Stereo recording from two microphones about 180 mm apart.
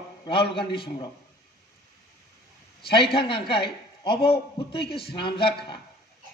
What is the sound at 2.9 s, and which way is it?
Speech, 30° left (ahead or behind).